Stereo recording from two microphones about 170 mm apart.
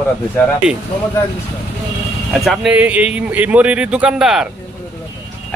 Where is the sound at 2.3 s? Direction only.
Centre (ahead or behind).